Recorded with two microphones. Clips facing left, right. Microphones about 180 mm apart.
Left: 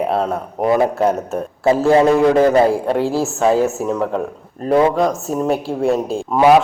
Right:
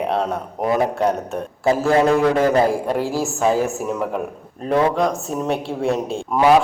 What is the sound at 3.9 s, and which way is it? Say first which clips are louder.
Speech: left 4 dB; 5° right (ahead or behind).